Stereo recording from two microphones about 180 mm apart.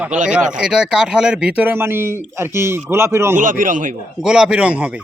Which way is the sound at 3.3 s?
45° right (ahead or behind).